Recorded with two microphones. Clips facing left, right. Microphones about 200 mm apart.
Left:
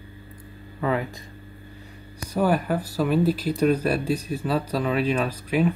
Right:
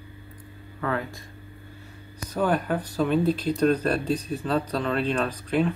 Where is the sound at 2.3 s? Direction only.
10° left (ahead or behind).